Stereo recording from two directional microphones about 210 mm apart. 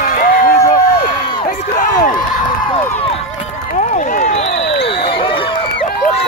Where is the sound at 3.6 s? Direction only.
35° left (ahead or behind).